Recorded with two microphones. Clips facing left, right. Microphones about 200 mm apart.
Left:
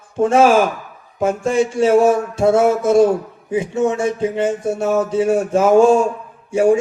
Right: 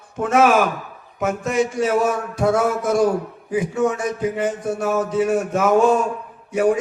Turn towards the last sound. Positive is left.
turn(degrees=25)  # may be behind; listen again after turning